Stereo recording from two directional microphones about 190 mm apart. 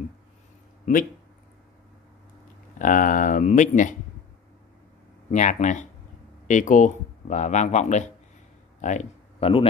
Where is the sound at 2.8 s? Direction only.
45° left (ahead or behind).